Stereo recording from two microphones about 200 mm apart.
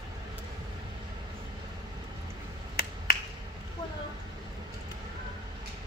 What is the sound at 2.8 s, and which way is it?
Finger snapping, 50° left (ahead or behind).